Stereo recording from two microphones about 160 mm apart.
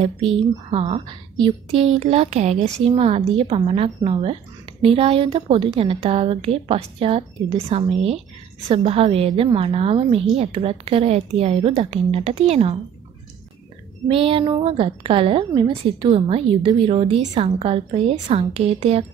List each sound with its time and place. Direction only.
0.0 s a woman's voice: 35° right (ahead or behind)
14.0 s a woman's voice: 35° right (ahead or behind)